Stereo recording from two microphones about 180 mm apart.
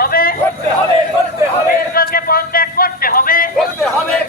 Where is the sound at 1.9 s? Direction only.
55° left (ahead or behind).